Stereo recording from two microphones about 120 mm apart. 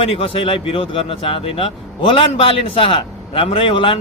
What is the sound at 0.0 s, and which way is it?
Speech, 50° left (ahead or behind).